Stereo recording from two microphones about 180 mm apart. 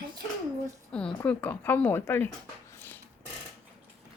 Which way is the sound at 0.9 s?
5° left (ahead or behind).